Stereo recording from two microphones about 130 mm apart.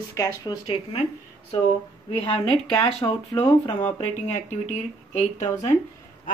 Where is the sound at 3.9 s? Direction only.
60° left (ahead or behind).